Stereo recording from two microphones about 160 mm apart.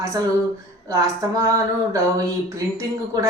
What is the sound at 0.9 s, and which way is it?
A woman's voice, 20° right (ahead or behind).